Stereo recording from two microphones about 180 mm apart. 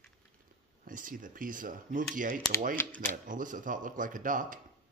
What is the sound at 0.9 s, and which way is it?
Speech, 50° right (ahead or behind).